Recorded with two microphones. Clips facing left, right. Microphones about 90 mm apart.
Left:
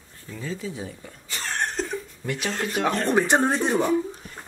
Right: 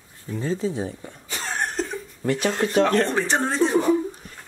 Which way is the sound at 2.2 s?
40° right (ahead or behind).